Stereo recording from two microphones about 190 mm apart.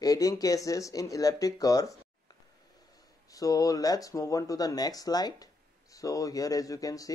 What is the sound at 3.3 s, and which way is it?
Speech, 20° left (ahead or behind).